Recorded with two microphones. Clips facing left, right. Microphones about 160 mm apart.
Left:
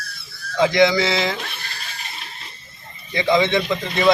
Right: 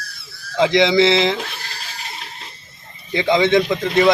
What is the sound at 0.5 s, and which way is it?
Speech, 20° right (ahead or behind).